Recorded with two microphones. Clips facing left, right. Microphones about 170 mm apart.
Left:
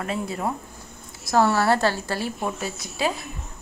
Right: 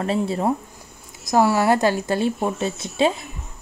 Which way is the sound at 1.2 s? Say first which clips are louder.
Right 2 dB; 15° right (ahead or behind).